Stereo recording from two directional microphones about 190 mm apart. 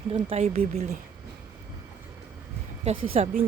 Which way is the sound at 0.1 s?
35° right (ahead or behind).